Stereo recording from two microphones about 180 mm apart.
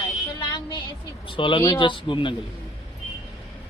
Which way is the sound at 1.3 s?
25° left (ahead or behind).